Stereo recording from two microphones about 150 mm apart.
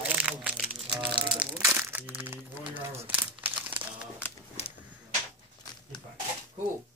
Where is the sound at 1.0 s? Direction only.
35° right (ahead or behind).